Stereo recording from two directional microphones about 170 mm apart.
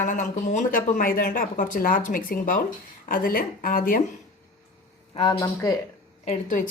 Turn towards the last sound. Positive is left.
turn(degrees=45)  # may be behind; listen again after turning